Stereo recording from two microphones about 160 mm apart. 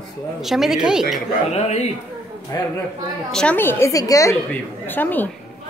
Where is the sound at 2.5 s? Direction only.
20° left (ahead or behind).